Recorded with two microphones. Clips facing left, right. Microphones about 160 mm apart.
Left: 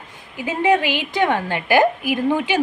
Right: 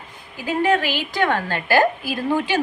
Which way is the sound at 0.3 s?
20° left (ahead or behind).